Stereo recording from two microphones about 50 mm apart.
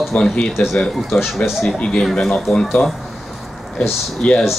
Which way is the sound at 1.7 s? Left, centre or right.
Centre.